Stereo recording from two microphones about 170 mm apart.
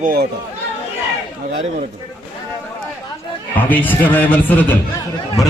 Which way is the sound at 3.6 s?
10° left (ahead or behind).